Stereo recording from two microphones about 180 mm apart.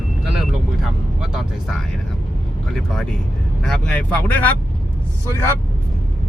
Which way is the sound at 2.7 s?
5° left (ahead or behind).